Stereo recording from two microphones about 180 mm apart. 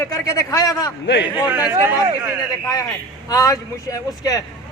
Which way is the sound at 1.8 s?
10° right (ahead or behind).